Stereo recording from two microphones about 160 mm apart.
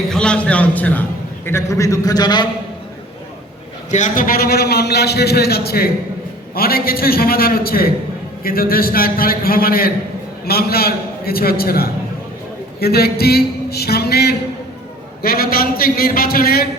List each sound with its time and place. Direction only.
0.1 s a man's voice: 5° left (ahead or behind); by 2.5 s 25° left (ahead or behind)
3.9 s a man's voice: 55° left (ahead or behind); by 14.3 s 85° left
15.2 s a man's voice: 70° left (ahead or behind)